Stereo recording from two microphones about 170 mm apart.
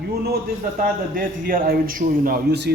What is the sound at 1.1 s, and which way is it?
A man's voice, 55° right (ahead or behind).